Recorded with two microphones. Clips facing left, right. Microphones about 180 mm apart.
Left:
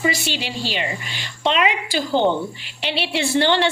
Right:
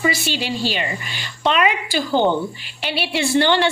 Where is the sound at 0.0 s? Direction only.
25° left (ahead or behind).